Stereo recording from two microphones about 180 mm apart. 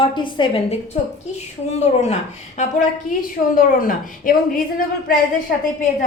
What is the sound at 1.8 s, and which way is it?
A woman's voice, 35° left (ahead or behind).